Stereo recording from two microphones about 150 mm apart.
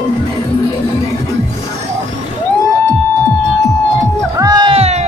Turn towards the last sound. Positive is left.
turn(degrees=-45)  # may be behind; listen again after turning